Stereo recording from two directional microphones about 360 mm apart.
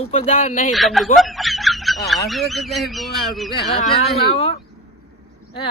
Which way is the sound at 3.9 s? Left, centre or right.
Centre.